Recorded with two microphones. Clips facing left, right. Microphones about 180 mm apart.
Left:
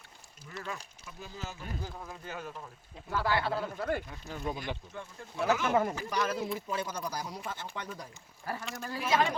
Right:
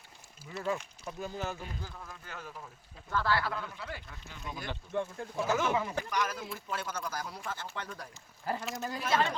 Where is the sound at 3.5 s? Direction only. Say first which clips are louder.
Left 8 dB; 40° left (ahead or behind).